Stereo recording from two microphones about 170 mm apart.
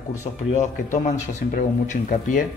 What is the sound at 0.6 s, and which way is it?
Speech, 45° left (ahead or behind).